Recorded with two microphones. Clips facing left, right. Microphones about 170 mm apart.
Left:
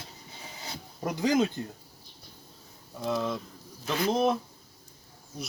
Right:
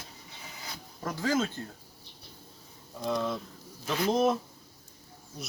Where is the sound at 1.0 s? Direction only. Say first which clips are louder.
Left 4 dB; 20° left (ahead or behind).